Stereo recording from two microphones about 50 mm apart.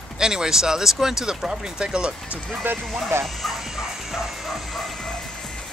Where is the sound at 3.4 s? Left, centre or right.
Centre.